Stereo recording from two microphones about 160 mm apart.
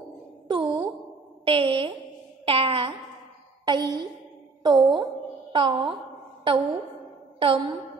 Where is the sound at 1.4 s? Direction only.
35° right (ahead or behind).